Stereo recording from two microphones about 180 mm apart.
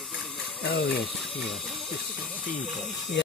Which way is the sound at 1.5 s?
Centre (ahead or behind).